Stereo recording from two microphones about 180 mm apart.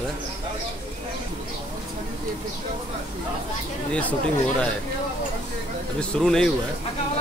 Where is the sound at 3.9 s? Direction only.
10° left (ahead or behind).